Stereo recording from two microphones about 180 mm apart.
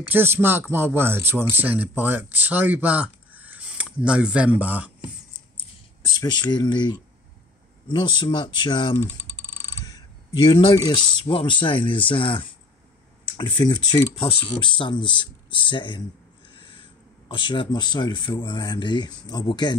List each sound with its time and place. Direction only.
0.1 s speech: 10° right (ahead or behind)
6.0 s speech: 25° left (ahead or behind)
13.7 s speech: 25° left (ahead or behind)
16.5 s owl: 30° left (ahead or behind)
17.3 s speech: 25° left (ahead or behind)